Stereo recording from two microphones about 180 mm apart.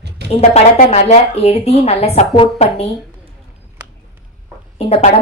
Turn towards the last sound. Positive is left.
turn(degrees=35)  # may be behind; listen again after turning